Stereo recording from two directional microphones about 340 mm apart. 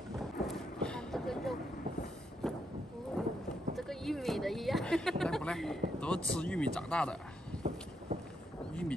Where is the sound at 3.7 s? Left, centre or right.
Centre.